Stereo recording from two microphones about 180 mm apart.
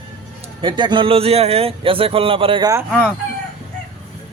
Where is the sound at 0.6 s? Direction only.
25° right (ahead or behind).